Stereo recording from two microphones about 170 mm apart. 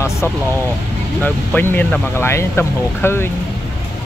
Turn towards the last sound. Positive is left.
turn(degrees=15)  # may be behind; listen again after turning